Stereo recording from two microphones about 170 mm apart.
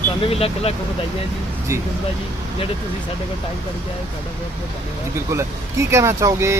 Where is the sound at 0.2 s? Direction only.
35° left (ahead or behind).